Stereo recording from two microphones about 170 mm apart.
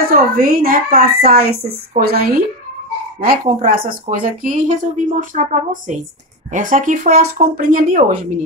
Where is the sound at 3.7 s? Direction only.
60° right (ahead or behind).